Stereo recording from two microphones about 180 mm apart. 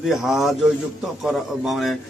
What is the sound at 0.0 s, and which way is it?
A man's voice, centre (ahead or behind).